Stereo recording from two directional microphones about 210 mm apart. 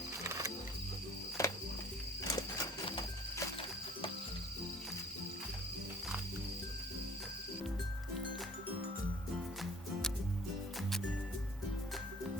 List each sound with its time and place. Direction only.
0.3 s wild animals: 15° right (ahead or behind)
1.4 s music: 15° left (ahead or behind)
2.2 s horse: 15° left (ahead or behind)